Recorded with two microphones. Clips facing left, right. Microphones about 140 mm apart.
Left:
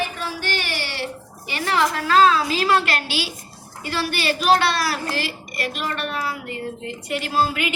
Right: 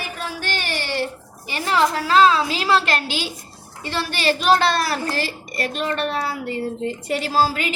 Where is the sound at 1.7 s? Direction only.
25° right (ahead or behind).